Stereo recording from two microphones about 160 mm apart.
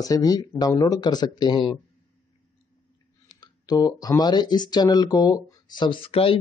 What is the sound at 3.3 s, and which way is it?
Speech, 25° left (ahead or behind).